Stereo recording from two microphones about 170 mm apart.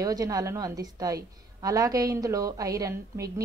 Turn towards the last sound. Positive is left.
turn(degrees=-20)  # may be behind; listen again after turning